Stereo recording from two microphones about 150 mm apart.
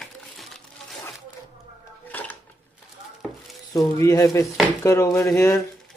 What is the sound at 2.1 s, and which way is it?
Dishes, 10° left (ahead or behind).